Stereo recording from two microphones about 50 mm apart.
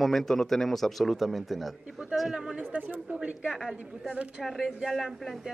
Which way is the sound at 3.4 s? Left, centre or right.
Centre.